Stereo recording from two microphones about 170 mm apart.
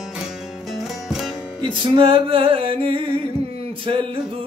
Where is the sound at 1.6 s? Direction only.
30° right (ahead or behind).